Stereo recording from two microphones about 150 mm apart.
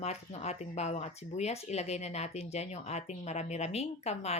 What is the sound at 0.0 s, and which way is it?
Speech, 45° left (ahead or behind).